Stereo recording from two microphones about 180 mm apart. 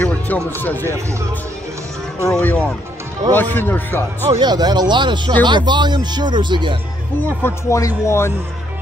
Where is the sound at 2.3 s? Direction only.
5° left (ahead or behind).